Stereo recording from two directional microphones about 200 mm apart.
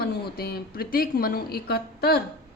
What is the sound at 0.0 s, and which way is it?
A woman's voice, 50° left (ahead or behind).